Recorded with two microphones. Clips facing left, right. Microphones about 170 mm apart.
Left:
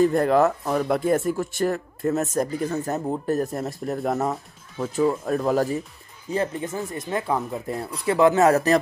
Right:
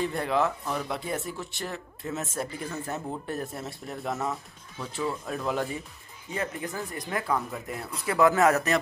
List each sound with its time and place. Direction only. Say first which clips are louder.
0.0 s speech: left 9 dB; 45° left (ahead or behind)
6.3 s speech: left 7 dB; 25° left (ahead or behind)